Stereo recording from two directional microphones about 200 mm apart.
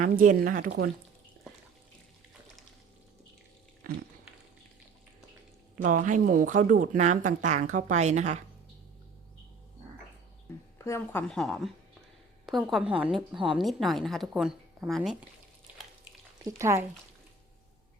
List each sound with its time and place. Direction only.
0.0 s speech: 40° right (ahead or behind)
3.9 s a sound: 45° right (ahead or behind)
5.7 s speech: 40° right (ahead or behind)
10.8 s a woman's voice: 15° left (ahead or behind)
16.4 s speech: 15° right (ahead or behind)